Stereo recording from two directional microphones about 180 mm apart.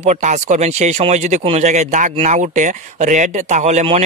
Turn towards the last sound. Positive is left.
turn(degrees=-35)  # may be behind; listen again after turning